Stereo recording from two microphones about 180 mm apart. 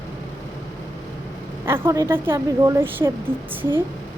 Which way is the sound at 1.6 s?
15° right (ahead or behind).